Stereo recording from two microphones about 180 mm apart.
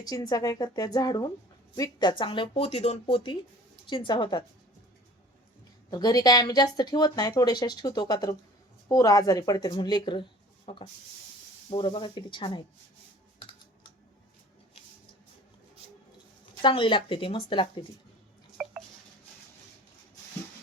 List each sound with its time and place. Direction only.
0.0 s a woman's voice: 20° left (ahead or behind)
5.9 s a woman's voice: 20° left (ahead or behind)
16.6 s a woman's voice: 30° left (ahead or behind)
18.6 s a sound: 5° right (ahead or behind)